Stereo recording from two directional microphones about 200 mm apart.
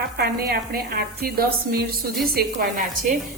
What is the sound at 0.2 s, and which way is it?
Speech, 50° right (ahead or behind).